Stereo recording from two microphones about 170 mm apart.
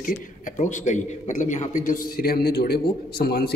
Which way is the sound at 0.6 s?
45° left (ahead or behind).